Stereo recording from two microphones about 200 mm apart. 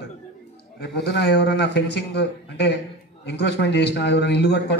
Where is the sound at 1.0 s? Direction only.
55° left (ahead or behind).